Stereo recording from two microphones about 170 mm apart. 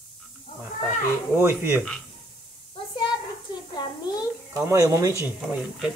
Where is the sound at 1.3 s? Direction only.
10° right (ahead or behind).